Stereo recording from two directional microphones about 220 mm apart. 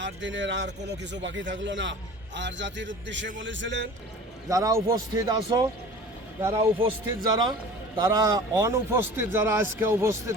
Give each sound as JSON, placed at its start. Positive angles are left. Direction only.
{"t": 0.0, "sound": "a man's voice", "side_deg": -55}
{"t": 4.4, "sound": "a man's voice", "side_deg": -15}